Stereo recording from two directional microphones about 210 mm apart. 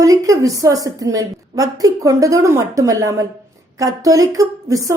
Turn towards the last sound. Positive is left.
turn(degrees=-15)  # may be behind; listen again after turning